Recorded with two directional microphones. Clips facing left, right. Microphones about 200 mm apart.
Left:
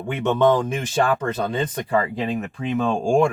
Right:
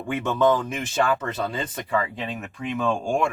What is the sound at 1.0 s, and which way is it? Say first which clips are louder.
Speech: left 2 dB; 30° left (ahead or behind).